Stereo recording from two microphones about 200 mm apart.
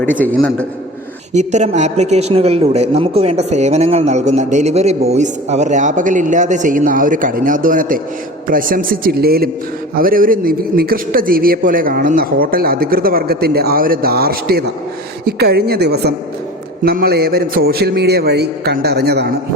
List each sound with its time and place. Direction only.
0.0 s a man's voice: 10° left (ahead or behind)
1.3 s a man's voice: 35° right (ahead or behind); by 19.3 s 55° right (ahead or behind)